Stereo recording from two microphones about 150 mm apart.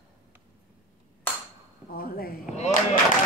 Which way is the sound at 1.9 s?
80° left.